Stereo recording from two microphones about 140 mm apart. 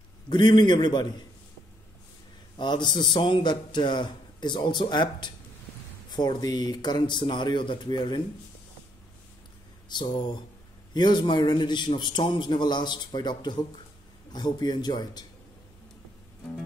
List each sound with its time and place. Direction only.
0.3 s a man's voice: 30° left (ahead or behind)
2.6 s a man's voice: 30° left (ahead or behind)
9.9 s a man's voice: 30° left (ahead or behind)